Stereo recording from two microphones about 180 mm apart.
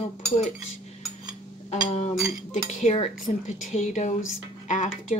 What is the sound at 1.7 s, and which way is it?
Dishes, 40° left (ahead or behind).